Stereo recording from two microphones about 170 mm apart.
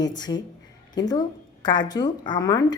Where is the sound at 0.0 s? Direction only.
25° left (ahead or behind).